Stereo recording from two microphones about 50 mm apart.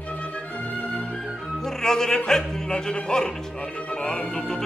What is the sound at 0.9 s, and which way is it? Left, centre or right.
Music, centre.